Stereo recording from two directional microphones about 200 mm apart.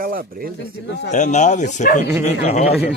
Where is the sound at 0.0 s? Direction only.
45° right (ahead or behind).